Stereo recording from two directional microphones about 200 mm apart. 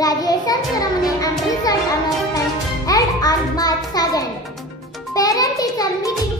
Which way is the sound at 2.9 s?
20° left (ahead or behind).